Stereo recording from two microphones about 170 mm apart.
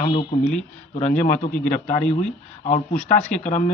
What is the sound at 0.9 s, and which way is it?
Speech, 45° left (ahead or behind).